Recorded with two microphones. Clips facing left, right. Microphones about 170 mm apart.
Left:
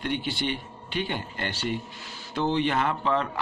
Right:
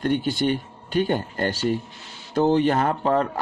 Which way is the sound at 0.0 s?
45° right (ahead or behind).